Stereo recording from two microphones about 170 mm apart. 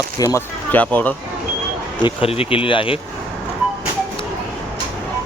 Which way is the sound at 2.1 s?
35° left (ahead or behind).